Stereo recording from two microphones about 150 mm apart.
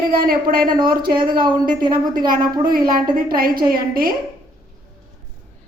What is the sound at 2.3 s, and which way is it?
A woman's voice, 75° right (ahead or behind).